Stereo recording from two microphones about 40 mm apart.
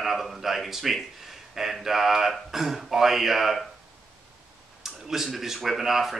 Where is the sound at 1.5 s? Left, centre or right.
Centre.